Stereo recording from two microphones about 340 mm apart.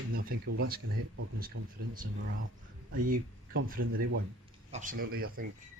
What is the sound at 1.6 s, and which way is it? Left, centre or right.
Speech, right.